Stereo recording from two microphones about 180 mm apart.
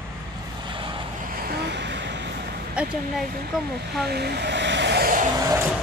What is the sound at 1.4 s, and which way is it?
Vehicle, 65° right (ahead or behind).